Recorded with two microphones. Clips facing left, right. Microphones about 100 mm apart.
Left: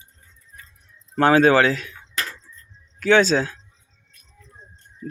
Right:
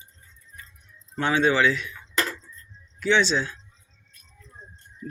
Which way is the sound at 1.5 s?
45° left (ahead or behind).